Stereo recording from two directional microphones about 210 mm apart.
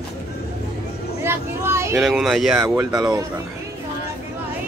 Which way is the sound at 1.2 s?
10° right (ahead or behind).